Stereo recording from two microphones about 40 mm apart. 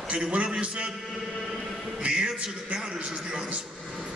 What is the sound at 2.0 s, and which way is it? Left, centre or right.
A man's voice, centre.